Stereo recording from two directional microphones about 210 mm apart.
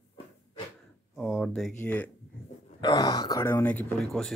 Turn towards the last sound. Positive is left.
turn(degrees=0)  # may be behind; listen again after turning